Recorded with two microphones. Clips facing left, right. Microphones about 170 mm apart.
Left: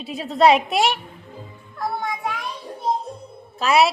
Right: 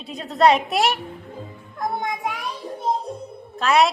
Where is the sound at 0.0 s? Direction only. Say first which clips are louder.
Left 1 dB; 5° left (ahead or behind).